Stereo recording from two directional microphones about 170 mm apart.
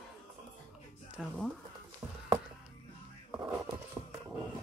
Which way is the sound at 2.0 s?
15° right (ahead or behind).